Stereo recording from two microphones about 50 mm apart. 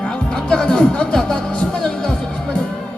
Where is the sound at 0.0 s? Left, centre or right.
Left.